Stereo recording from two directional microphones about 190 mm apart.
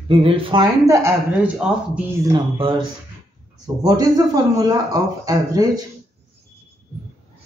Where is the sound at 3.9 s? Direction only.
20° right (ahead or behind).